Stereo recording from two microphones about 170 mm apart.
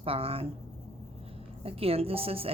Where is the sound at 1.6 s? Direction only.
35° right (ahead or behind).